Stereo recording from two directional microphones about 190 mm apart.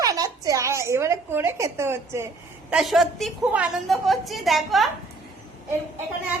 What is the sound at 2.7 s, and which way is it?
A woman's voice, centre (ahead or behind).